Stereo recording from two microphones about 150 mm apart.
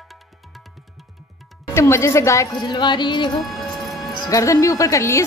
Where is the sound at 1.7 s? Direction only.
20° left (ahead or behind).